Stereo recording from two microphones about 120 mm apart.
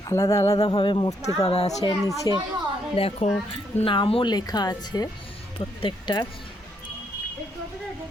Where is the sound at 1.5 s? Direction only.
60° left (ahead or behind).